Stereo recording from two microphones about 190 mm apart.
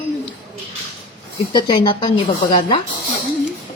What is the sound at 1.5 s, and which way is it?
A woman's voice, 25° left (ahead or behind).